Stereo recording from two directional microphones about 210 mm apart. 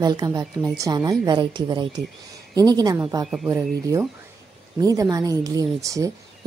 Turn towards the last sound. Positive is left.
turn(degrees=-15)  # may be behind; listen again after turning